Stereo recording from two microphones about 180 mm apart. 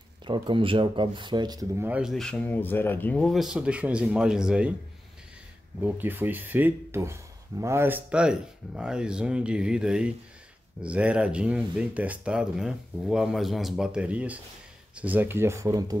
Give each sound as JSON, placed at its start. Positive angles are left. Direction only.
{"t": 0.2, "sound": "speech", "side_deg": -25}
{"t": 1.9, "sound": "speech", "side_deg": -5}
{"t": 5.8, "sound": "speech", "side_deg": -10}